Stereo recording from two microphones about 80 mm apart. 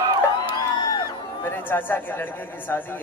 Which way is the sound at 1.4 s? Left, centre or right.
Left.